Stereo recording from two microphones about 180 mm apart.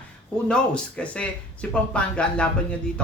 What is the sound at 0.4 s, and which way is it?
A man's voice, 5° left (ahead or behind).